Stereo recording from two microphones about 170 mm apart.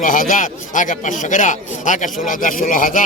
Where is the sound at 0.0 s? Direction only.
50° left (ahead or behind).